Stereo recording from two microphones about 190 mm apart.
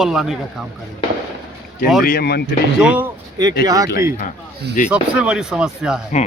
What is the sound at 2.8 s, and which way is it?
Speech, 10° right (ahead or behind).